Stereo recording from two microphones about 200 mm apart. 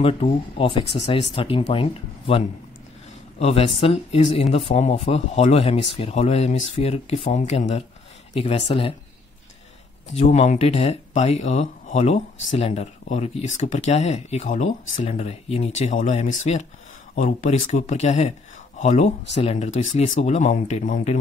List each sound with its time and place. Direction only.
0.0 s speech: 25° left (ahead or behind)
10.1 s speech: 30° left (ahead or behind)